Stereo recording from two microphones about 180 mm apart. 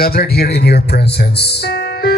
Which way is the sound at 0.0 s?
60° left (ahead or behind).